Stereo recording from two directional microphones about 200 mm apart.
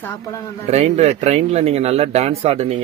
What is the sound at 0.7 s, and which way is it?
Speech, 35° right (ahead or behind).